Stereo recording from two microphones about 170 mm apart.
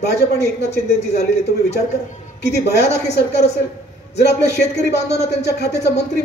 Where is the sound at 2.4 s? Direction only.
75° left (ahead or behind).